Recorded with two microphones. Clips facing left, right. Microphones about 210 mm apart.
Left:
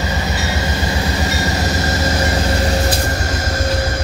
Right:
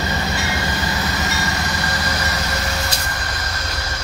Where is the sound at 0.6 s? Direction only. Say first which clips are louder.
Left 3 dB; 25° left (ahead or behind).